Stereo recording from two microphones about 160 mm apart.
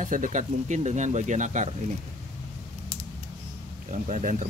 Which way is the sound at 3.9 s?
50° right (ahead or behind).